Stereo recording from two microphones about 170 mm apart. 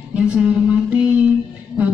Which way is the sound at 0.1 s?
5° right (ahead or behind).